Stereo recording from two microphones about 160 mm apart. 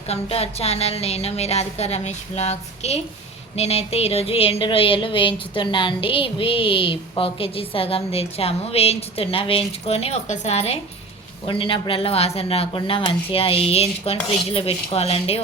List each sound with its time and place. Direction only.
0.1 s speech: 40° left (ahead or behind)